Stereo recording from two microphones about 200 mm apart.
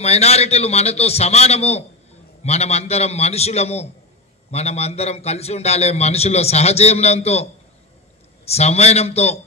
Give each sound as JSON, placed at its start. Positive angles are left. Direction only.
{"t": 0.0, "sound": "a man's voice", "side_deg": 30}
{"t": 8.5, "sound": "a man's voice", "side_deg": 30}